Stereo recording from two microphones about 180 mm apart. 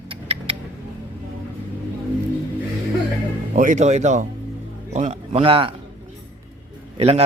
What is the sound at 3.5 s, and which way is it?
Speech, 45° right (ahead or behind).